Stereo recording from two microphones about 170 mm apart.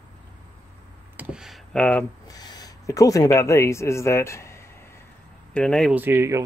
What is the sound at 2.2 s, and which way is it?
Speech, 25° left (ahead or behind).